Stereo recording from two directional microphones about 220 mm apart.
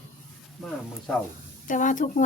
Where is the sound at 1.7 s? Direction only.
35° left (ahead or behind).